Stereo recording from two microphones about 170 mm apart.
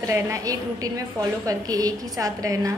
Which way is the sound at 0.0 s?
20° right (ahead or behind).